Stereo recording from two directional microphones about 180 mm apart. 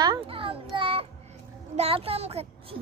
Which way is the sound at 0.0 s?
25° right (ahead or behind).